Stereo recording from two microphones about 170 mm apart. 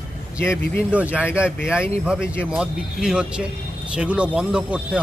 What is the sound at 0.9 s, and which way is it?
Speech, 10° right (ahead or behind).